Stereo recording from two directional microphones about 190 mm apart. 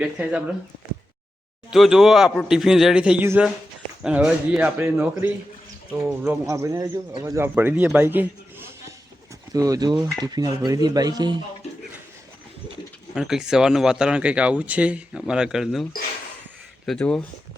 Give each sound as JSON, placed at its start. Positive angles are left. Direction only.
{"t": 0.0, "sound": "speech", "side_deg": -5}
{"t": 1.7, "sound": "speech", "side_deg": 0}
{"t": 13.1, "sound": "speech", "side_deg": -5}